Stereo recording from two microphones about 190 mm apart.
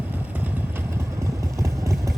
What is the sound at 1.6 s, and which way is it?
Vehicle, 15° right (ahead or behind).